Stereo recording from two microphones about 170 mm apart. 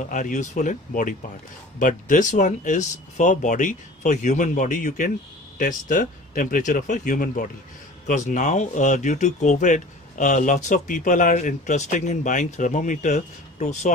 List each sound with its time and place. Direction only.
0.1 s speech: 45° left (ahead or behind)